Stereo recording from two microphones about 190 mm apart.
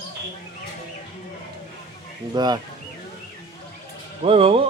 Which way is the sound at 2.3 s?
20° right (ahead or behind).